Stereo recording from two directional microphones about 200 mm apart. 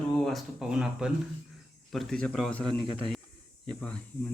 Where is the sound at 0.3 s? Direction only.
Centre (ahead or behind).